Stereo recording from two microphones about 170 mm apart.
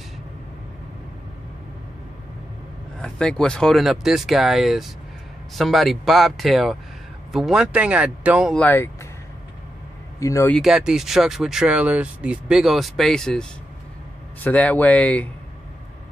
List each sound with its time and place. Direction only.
3.0 s speech: 5° left (ahead or behind)
8.5 s speech: 10° left (ahead or behind)
10.2 s speech: 15° left (ahead or behind)
10.5 s speech: centre (ahead or behind)